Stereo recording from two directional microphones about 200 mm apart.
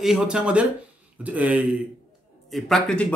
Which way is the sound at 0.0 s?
5° right (ahead or behind).